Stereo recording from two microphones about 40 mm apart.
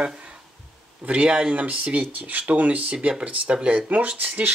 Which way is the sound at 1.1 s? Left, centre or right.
Right.